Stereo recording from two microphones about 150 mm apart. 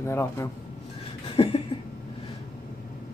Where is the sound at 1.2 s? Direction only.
40° left (ahead or behind).